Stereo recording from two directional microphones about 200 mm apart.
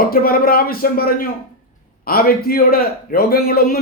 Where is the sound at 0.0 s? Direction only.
50° left (ahead or behind).